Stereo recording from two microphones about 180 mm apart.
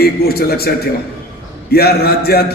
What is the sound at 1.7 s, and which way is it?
Speech, 60° left (ahead or behind).